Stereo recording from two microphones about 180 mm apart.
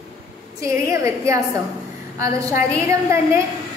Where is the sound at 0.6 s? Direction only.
15° right (ahead or behind).